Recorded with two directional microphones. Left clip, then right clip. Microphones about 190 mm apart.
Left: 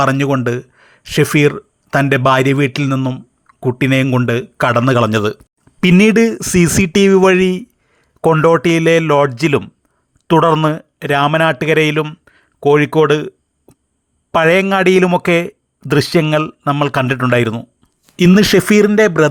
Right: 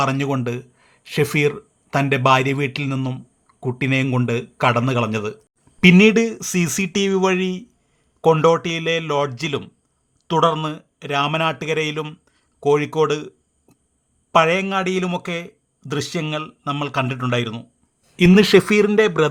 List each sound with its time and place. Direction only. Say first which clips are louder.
0.0 s speech: left 7 dB; 25° left (ahead or behind)
14.3 s speech: left 5 dB; 30° left (ahead or behind)